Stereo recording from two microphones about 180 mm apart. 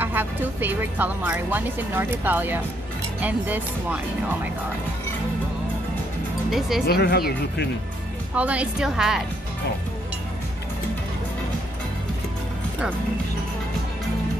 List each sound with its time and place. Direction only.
0.0 s a woman's voice: 10° right (ahead or behind)
6.9 s speech: 60° left (ahead or behind)
8.4 s a woman's voice: 5° right (ahead or behind)